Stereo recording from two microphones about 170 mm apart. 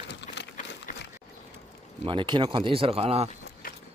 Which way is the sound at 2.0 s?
30° right (ahead or behind).